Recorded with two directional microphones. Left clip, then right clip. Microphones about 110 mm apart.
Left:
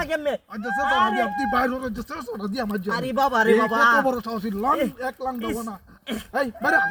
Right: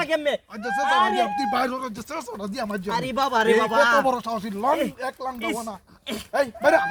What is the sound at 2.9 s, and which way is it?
Speech, 10° right (ahead or behind).